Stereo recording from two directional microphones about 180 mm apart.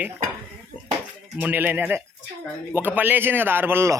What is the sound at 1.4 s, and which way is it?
A man's voice, 10° right (ahead or behind).